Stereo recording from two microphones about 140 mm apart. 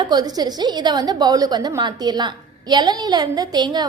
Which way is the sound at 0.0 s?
30° right (ahead or behind).